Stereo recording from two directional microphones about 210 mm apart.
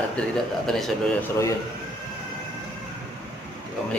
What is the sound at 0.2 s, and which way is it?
Speech, 5° left (ahead or behind).